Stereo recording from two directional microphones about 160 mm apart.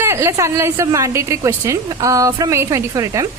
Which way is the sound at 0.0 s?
15° right (ahead or behind).